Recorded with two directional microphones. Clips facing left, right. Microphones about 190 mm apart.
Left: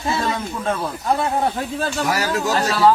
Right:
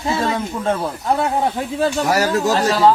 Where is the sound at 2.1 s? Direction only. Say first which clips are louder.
Right 4 dB; 40° right (ahead or behind).